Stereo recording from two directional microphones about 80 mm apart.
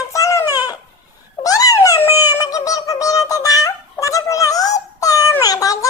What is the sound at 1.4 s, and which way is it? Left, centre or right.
Babbling, left.